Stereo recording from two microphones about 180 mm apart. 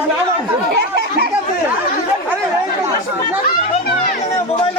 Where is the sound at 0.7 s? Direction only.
65° right (ahead or behind).